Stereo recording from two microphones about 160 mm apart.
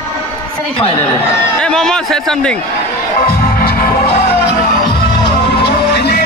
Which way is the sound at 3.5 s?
70° left (ahead or behind).